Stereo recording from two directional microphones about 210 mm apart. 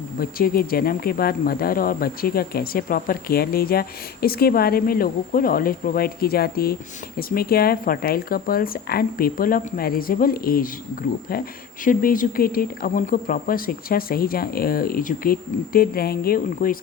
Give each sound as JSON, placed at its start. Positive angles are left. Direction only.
{"t": 0.2, "sound": "speech", "side_deg": 45}
{"t": 11.9, "sound": "speech", "side_deg": 40}